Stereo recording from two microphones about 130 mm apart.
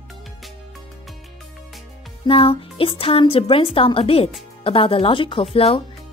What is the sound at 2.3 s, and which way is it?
Speech, 45° left (ahead or behind).